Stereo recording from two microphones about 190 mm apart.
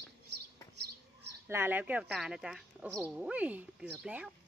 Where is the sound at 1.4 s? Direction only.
10° right (ahead or behind).